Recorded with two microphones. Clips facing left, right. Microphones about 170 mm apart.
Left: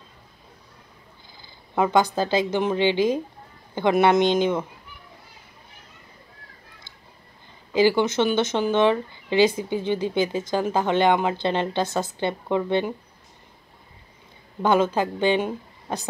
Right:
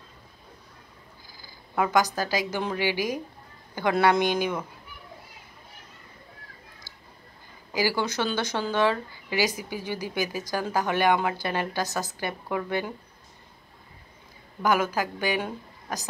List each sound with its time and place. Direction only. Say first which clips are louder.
1.4 s purr: left 4 dB; 25° left (ahead or behind)
2.1 s speech: left 6 dB; 25° left (ahead or behind)
7.7 s speech: left 7 dB; 25° left (ahead or behind)
14.6 s speech: left 4 dB; 25° left (ahead or behind)